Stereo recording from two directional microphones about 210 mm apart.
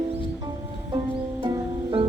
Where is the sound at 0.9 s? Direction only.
20° right (ahead or behind).